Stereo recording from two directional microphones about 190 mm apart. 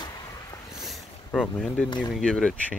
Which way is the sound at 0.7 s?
Centre (ahead or behind).